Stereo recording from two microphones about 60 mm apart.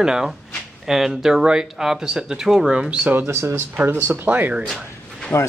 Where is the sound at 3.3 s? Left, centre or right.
Right.